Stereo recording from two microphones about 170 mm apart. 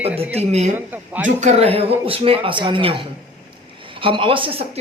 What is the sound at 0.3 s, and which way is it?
Speech, 40° right (ahead or behind).